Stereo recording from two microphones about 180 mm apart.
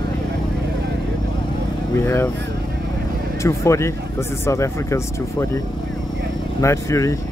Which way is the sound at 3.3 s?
15° left (ahead or behind).